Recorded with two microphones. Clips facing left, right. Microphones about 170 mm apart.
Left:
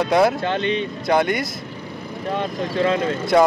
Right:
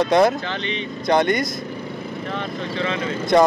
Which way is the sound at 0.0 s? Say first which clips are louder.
Right 1 dB; 10° left (ahead or behind).